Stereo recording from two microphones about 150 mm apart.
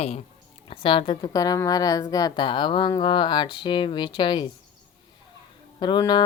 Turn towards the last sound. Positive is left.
turn(degrees=30)  # may be behind; listen again after turning